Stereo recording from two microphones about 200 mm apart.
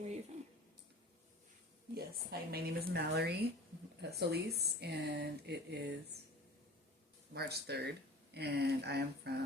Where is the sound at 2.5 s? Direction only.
50° right (ahead or behind).